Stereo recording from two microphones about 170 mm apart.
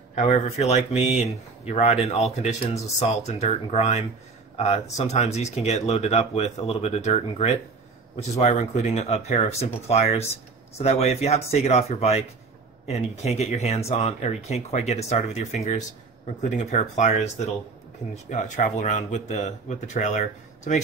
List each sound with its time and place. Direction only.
0.1 s speech: 40° left (ahead or behind)
18.3 s speech: 45° left (ahead or behind)